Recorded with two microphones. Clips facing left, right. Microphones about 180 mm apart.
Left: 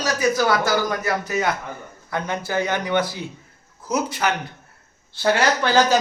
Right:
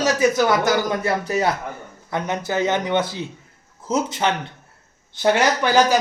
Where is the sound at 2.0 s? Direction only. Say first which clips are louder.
Right 2 dB; 20° right (ahead or behind).